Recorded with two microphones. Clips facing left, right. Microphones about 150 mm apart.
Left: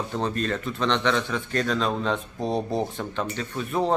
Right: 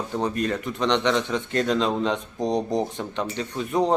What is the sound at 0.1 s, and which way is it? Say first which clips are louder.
Speech: right 4 dB; 15° right (ahead or behind).